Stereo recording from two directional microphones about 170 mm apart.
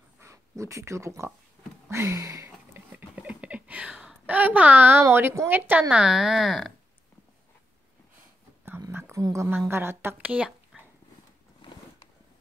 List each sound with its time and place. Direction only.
0.2 s speech: 15° right (ahead or behind)
1.9 s a sound: 15° right (ahead or behind)
5.0 s speech: 15° right (ahead or behind)
8.6 s whispering: 10° right (ahead or behind)
9.7 s speech: 15° right (ahead or behind)
11.6 s a sound: 30° left (ahead or behind)